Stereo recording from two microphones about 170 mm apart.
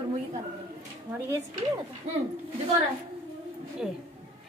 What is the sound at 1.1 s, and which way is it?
Speech, 15° right (ahead or behind).